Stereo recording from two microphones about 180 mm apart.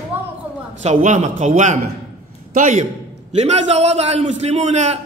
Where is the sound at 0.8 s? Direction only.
40° right (ahead or behind).